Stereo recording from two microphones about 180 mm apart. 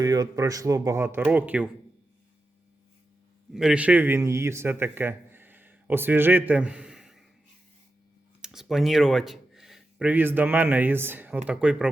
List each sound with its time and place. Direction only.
0.0 s speech: 20° right (ahead or behind)
3.5 s speech: 5° right (ahead or behind)
8.4 s speech: centre (ahead or behind)